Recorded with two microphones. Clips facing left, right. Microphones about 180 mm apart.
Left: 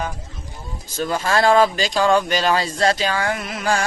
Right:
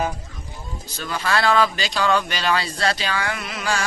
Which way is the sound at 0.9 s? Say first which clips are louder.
Left 4 dB; 45° left (ahead or behind).